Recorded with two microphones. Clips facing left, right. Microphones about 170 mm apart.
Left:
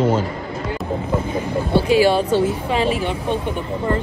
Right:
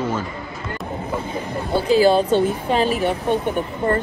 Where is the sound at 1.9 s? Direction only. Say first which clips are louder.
Right 2 dB; 30° right (ahead or behind).